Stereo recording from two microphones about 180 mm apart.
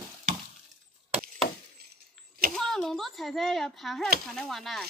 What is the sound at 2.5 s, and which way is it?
A child's voice, centre (ahead or behind).